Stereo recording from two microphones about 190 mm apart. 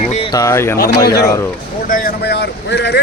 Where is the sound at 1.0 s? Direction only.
55° left (ahead or behind).